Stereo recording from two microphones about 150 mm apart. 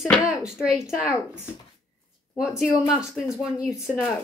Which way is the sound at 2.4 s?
5° right (ahead or behind).